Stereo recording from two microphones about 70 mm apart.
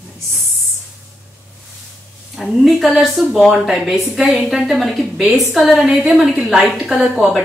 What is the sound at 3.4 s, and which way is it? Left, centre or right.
Speech, centre.